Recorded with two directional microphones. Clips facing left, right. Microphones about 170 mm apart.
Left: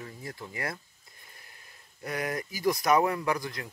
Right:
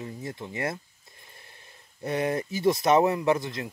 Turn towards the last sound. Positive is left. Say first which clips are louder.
# right 6 dB
turn(degrees=-20)  # may be behind; listen again after turning